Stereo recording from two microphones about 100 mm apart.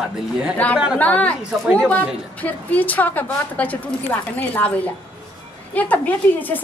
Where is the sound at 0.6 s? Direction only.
15° left (ahead or behind).